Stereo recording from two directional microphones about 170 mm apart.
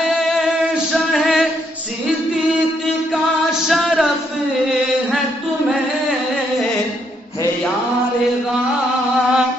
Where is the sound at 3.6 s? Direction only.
Centre (ahead or behind).